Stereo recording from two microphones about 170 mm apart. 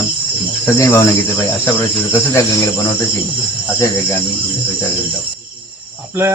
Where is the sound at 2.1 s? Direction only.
20° left (ahead or behind).